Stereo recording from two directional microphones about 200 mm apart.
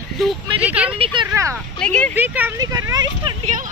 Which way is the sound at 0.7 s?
5° right (ahead or behind).